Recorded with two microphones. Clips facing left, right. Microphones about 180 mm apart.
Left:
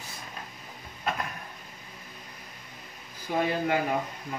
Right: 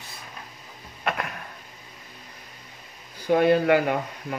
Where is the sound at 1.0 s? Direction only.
70° right (ahead or behind).